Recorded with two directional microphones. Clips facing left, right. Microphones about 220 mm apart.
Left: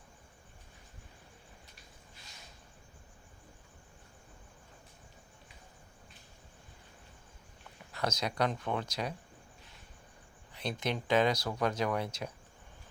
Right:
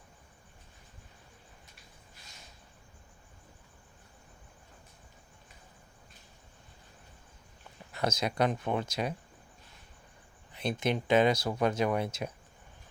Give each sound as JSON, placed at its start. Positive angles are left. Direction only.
{"t": 7.9, "sound": "speech", "side_deg": -20}
{"t": 10.6, "sound": "speech", "side_deg": -55}
{"t": 10.9, "sound": "speech", "side_deg": -20}